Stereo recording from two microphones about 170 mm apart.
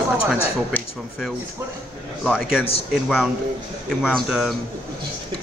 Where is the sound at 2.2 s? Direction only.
5° left (ahead or behind).